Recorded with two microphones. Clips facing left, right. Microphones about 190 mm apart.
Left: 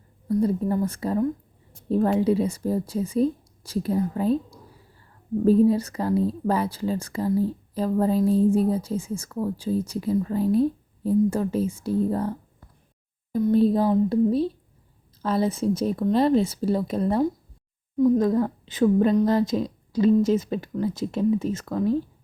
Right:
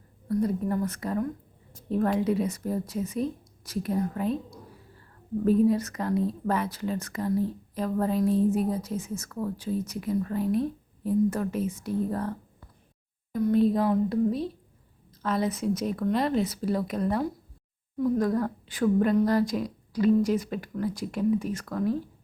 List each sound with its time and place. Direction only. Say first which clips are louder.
0.3 s a woman's voice: left 4 dB; 30° left (ahead or behind)
5.5 s a woman's voice: left 4 dB; 30° left (ahead or behind)